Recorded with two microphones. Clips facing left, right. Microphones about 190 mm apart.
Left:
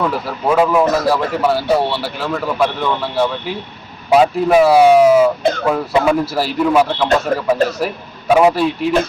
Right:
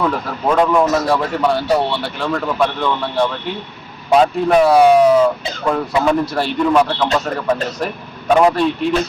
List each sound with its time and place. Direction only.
0.0 s speech: 5° left (ahead or behind)
5.4 s speech: 55° left (ahead or behind)
5.6 s a man's voice: 5° left (ahead or behind)